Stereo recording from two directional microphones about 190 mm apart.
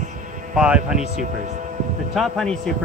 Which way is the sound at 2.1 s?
Centre (ahead or behind).